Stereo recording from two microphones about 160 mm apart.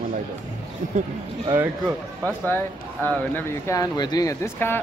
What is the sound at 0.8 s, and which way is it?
Speech, 50° right (ahead or behind).